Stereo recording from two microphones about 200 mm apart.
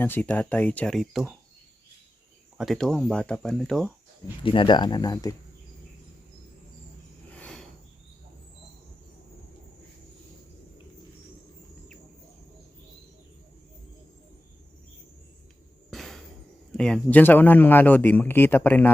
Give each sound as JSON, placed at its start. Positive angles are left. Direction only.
{"t": 0.0, "sound": "a man's voice", "side_deg": 10}
{"t": 2.6, "sound": "speech", "side_deg": 0}
{"t": 4.4, "sound": "speech", "side_deg": 25}
{"t": 7.3, "sound": "a sound", "side_deg": 5}
{"t": 15.9, "sound": "a sound", "side_deg": 0}
{"t": 16.7, "sound": "a man's voice", "side_deg": 5}